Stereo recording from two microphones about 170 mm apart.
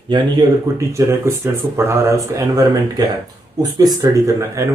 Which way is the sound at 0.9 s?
15° right (ahead or behind).